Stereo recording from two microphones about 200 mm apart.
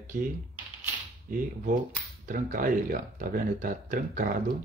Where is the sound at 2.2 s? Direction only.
40° right (ahead or behind).